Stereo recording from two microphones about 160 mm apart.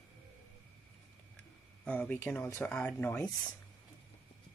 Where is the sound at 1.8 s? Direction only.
10° left (ahead or behind).